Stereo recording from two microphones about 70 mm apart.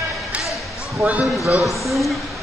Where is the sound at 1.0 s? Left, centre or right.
Centre.